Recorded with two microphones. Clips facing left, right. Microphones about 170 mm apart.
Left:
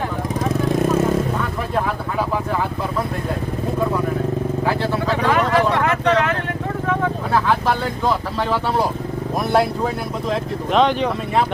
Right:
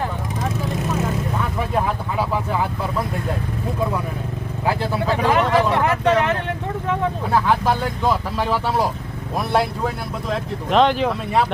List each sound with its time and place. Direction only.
5.2 s vehicle: 15° right (ahead or behind)
9.5 s speech: centre (ahead or behind)